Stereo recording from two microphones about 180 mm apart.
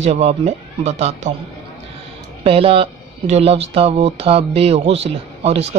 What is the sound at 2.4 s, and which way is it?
Speech, 30° right (ahead or behind).